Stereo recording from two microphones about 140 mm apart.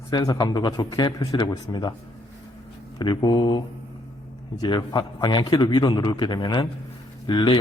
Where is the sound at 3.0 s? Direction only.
35° left (ahead or behind).